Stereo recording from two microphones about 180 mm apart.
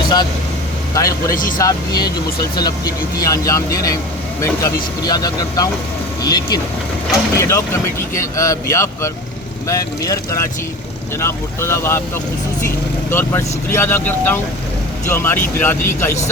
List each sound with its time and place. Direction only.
0.9 s speech: 20° left (ahead or behind)